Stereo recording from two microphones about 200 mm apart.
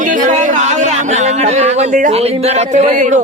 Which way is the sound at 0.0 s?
40° right (ahead or behind).